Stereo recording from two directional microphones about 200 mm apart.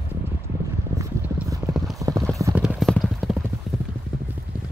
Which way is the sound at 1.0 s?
15° right (ahead or behind).